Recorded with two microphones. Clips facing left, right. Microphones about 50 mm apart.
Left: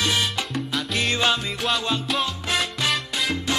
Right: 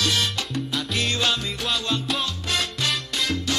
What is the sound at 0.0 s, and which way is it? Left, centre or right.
Salsa music, centre.